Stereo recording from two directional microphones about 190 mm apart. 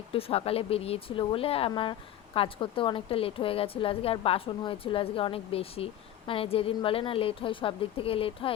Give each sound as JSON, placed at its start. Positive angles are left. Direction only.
{"t": 0.1, "sound": "speech", "side_deg": 30}